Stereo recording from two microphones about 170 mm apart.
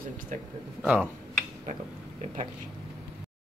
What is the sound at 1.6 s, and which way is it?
Speech, 40° right (ahead or behind).